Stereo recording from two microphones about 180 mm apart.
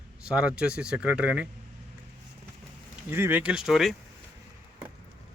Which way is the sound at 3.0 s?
10° right (ahead or behind).